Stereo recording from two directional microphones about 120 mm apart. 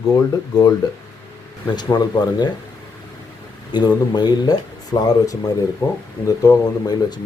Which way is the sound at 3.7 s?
35° left (ahead or behind).